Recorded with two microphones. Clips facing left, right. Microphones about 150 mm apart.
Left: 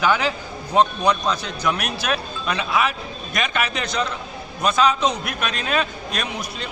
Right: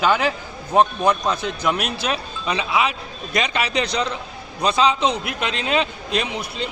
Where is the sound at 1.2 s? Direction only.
15° right (ahead or behind).